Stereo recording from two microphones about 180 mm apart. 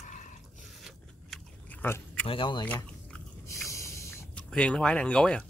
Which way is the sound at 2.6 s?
10° left (ahead or behind).